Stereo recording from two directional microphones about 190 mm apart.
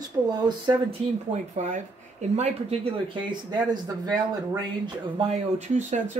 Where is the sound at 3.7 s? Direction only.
20° right (ahead or behind).